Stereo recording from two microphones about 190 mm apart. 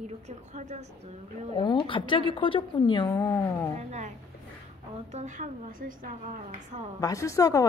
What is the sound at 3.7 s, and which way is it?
Speech, 35° right (ahead or behind).